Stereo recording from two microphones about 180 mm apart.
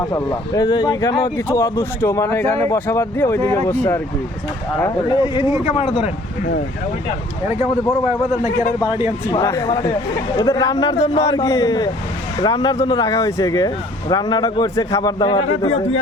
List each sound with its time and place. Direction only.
0.0 s speech: 20° left (ahead or behind)
5.2 s speech: 25° left (ahead or behind)
8.8 s speech: 25° left (ahead or behind)